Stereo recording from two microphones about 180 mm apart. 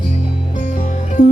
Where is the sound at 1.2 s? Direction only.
50° left (ahead or behind).